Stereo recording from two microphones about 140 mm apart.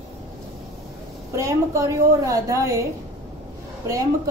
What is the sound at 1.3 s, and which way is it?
A woman's voice, 20° right (ahead or behind).